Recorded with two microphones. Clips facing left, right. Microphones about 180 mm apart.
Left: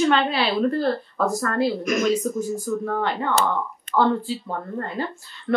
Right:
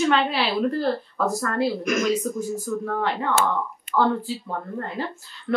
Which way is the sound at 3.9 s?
20° left (ahead or behind).